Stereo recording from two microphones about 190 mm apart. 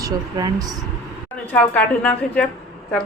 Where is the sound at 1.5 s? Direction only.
5° left (ahead or behind).